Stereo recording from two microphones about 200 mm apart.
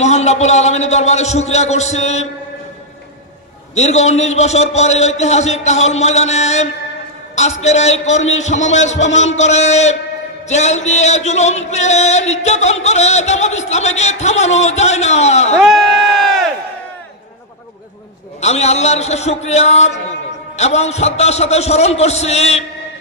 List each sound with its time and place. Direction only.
0.0 s a man's voice: 35° left (ahead or behind)
3.7 s a man's voice: 35° left (ahead or behind)
18.4 s a man's voice: 35° left (ahead or behind)